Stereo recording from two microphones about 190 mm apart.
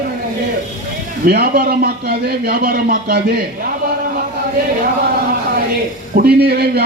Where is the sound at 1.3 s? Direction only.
50° right (ahead or behind).